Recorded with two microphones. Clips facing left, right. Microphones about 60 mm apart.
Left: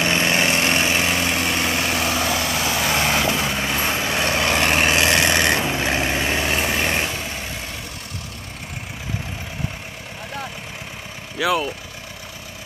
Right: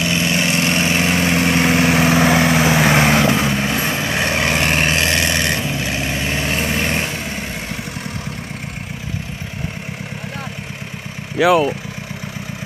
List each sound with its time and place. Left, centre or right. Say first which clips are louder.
0.1 s vehicle: right 1 dB; left
0.7 s vehicle: right 3 dB; centre
3.5 s vehicle: right 3 dB; centre
4.0 s vehicle: right 2 dB; centre
4.8 s vehicle: even; centre
6.3 s vehicle: right 1 dB; centre
11.3 s speech: right 8 dB; right